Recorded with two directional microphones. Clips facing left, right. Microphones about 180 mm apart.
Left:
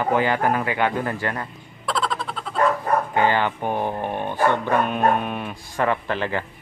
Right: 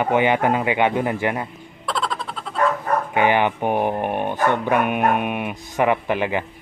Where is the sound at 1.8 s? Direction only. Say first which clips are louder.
Left 1 dB; centre (ahead or behind).